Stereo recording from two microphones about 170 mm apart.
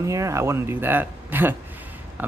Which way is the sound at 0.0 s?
20° right (ahead or behind).